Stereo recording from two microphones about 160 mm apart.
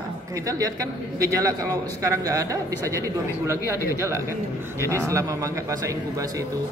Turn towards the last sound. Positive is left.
turn(degrees=-20)  # may be behind; listen again after turning